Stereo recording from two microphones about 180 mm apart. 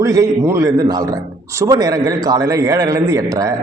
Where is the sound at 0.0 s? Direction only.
20° right (ahead or behind).